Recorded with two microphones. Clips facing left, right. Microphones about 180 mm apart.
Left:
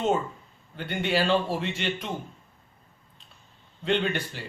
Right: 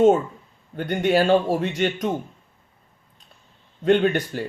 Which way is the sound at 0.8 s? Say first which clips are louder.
Right 7 dB; 45° right (ahead or behind).